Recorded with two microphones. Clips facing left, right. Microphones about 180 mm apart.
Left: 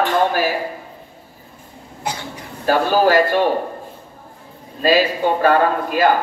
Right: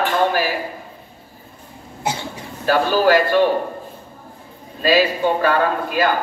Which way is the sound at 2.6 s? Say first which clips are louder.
Left 1 dB; 45° left (ahead or behind).